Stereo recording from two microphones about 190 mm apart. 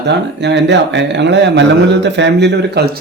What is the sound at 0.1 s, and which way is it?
Speech, 65° right (ahead or behind).